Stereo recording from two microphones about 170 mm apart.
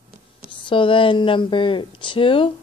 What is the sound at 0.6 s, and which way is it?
Speech, 30° left (ahead or behind).